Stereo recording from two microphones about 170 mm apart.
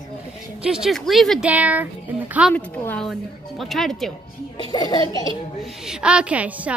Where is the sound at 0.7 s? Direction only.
5° right (ahead or behind).